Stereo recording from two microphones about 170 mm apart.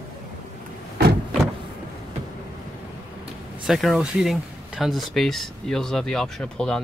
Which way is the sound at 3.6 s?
Centre (ahead or behind).